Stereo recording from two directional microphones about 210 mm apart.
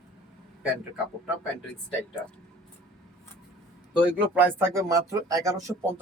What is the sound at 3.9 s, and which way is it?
Speech, 5° right (ahead or behind).